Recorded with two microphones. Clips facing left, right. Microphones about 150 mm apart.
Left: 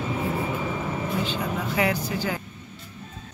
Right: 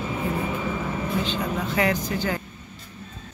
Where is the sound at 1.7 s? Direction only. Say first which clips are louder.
Right 1 dB; 10° left (ahead or behind).